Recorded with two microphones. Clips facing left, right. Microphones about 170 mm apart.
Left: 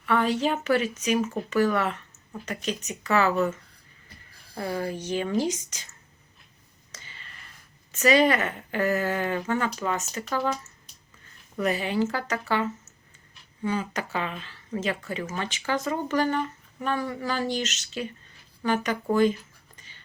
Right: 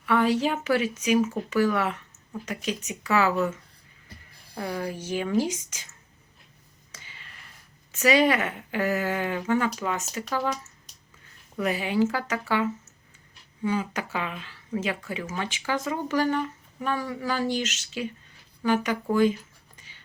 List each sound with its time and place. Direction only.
0.0 s speech: 10° right (ahead or behind)
4.9 s speech: 10° right (ahead or behind)
6.9 s a sound: 10° right (ahead or behind)
7.9 s speech: 10° right (ahead or behind)
11.6 s speech: 10° right (ahead or behind)
19.1 s a sound: 10° right (ahead or behind)